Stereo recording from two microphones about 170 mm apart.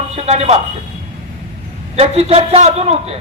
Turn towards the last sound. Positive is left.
turn(degrees=-35)  # may be behind; listen again after turning